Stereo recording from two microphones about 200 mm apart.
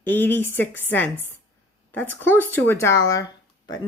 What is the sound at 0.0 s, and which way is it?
Speech, 10° left (ahead or behind).